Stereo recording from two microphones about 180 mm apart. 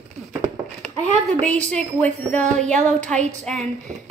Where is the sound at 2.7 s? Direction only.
40° right (ahead or behind).